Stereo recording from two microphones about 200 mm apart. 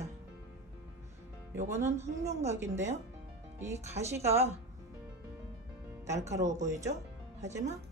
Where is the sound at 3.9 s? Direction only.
35° right (ahead or behind).